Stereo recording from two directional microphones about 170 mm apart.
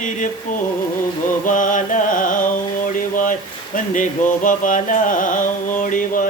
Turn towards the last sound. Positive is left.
turn(degrees=50)  # may be behind; listen again after turning